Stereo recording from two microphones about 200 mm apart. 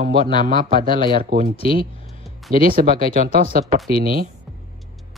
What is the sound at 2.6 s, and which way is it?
Speech, 45° right (ahead or behind).